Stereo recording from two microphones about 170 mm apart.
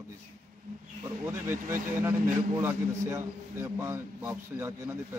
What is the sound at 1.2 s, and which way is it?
A man's voice, 15° right (ahead or behind).